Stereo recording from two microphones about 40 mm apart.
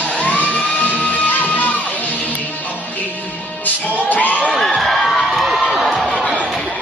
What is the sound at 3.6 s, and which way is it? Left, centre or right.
Music, left.